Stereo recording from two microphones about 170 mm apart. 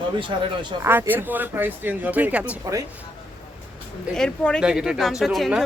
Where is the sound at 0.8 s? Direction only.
15° right (ahead or behind).